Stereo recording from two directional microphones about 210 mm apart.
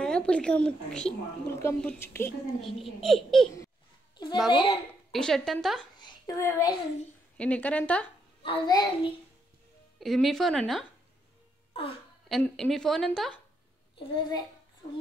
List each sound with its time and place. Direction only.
0.0 s a woman's voice: 5° left (ahead or behind)
2.8 s a woman's voice: centre (ahead or behind)
4.2 s a sound: 20° left (ahead or behind)
4.5 s child singing: 25° left (ahead or behind)
5.1 s a woman's voice: centre (ahead or behind)
5.9 s a child's voice: 20° left (ahead or behind)
7.3 s a woman's voice: 5° left (ahead or behind)
8.4 s child singing: 25° left (ahead or behind)
9.9 s a woman's voice: centre (ahead or behind)
12.3 s a woman's voice: centre (ahead or behind)
13.9 s child singing: 25° left (ahead or behind)